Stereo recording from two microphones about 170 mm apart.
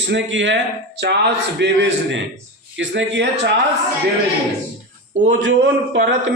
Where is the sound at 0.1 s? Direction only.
90° right.